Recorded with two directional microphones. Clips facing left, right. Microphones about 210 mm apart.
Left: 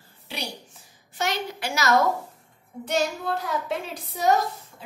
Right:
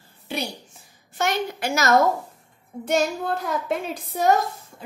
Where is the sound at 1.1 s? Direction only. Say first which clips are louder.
Right 4 dB; 50° right (ahead or behind).